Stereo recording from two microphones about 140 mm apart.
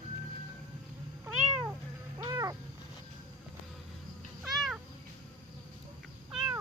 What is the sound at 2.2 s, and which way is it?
Cat, 25° right (ahead or behind).